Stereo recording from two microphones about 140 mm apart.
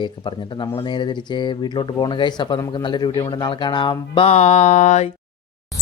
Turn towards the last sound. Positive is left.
turn(degrees=55)  # may be behind; listen again after turning